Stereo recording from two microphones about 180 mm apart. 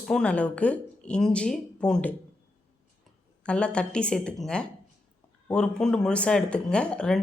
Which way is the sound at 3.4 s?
5° left (ahead or behind).